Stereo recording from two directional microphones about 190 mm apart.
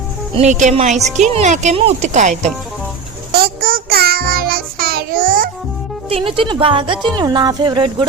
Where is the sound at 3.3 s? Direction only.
55° right (ahead or behind).